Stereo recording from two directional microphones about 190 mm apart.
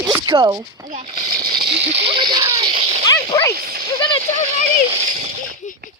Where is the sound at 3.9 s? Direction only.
25° left (ahead or behind).